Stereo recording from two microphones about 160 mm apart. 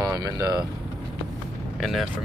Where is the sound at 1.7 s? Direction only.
Centre (ahead or behind).